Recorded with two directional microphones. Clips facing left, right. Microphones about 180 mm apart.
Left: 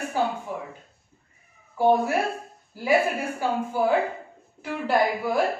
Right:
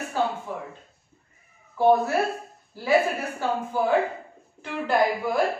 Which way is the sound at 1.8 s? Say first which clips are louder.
Right 1 dB; 15° left (ahead or behind).